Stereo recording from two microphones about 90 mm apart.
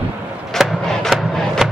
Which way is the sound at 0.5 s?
Centre (ahead or behind).